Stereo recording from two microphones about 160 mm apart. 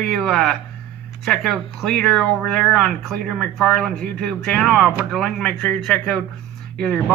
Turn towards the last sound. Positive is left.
turn(degrees=5)  # may be behind; listen again after turning